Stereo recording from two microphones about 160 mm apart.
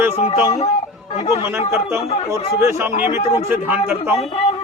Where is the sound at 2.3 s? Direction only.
15° right (ahead or behind).